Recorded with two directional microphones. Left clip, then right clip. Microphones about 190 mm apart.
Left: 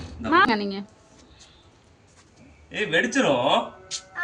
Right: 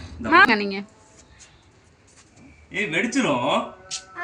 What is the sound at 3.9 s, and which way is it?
Speech, 35° right (ahead or behind).